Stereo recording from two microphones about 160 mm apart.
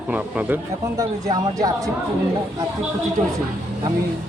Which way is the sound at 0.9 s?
20° right (ahead or behind).